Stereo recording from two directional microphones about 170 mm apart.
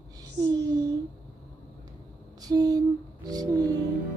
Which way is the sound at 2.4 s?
20° right (ahead or behind).